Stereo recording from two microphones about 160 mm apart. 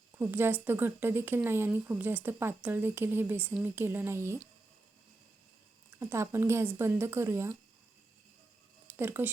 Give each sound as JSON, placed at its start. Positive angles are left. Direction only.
{"t": 0.2, "sound": "speech", "side_deg": -15}
{"t": 6.0, "sound": "speech", "side_deg": -15}
{"t": 8.9, "sound": "speech", "side_deg": -15}